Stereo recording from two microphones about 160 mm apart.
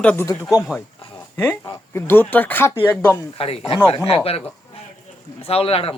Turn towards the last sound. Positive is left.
turn(degrees=35)  # may be behind; listen again after turning